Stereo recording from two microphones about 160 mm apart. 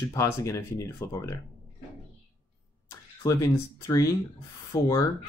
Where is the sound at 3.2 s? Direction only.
20° left (ahead or behind).